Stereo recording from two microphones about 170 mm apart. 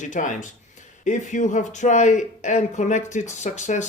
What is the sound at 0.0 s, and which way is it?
Speech, 50° left (ahead or behind).